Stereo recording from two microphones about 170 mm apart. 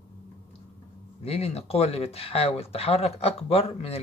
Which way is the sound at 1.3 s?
35° left (ahead or behind).